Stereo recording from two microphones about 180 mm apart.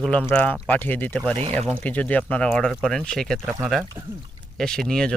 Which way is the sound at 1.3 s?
35° right (ahead or behind).